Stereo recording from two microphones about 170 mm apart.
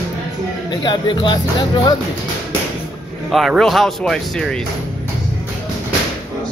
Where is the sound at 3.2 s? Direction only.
Centre (ahead or behind).